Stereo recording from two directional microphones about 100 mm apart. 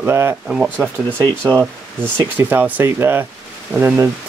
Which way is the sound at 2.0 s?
20° right (ahead or behind).